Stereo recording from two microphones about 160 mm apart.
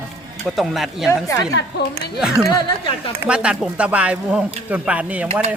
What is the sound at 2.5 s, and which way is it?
Speech, 30° left (ahead or behind).